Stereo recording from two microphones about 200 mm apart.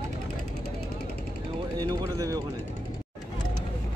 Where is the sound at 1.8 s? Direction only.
20° right (ahead or behind).